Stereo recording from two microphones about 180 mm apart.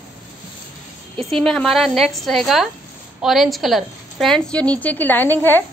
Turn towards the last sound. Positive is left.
turn(degrees=10)  # may be behind; listen again after turning